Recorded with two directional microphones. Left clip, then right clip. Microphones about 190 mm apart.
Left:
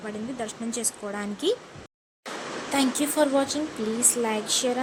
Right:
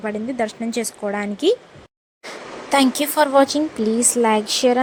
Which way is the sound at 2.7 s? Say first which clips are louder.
Right 9 dB; 40° right (ahead or behind).